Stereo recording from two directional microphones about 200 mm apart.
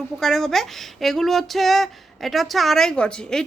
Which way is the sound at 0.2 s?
Centre (ahead or behind).